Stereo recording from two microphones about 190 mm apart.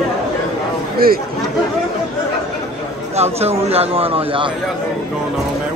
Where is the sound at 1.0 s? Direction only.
50° right (ahead or behind).